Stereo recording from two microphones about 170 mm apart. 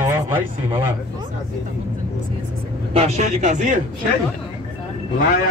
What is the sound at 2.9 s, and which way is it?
Speech, 40° right (ahead or behind).